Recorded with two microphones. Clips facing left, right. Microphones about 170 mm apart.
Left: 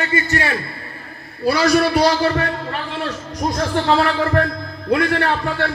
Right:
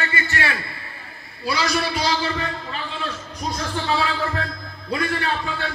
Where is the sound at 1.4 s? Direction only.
60° left (ahead or behind).